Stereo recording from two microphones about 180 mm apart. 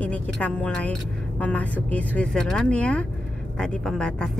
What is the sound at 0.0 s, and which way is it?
A woman's voice, 10° left (ahead or behind).